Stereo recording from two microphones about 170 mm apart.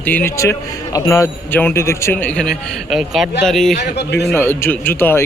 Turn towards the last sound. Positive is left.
turn(degrees=10)  # may be behind; listen again after turning